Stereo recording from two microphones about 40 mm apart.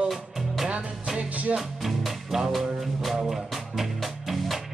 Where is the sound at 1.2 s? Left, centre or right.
Right.